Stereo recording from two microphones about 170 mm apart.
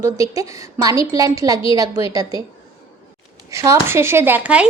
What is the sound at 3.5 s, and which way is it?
A woman's voice, 15° right (ahead or behind).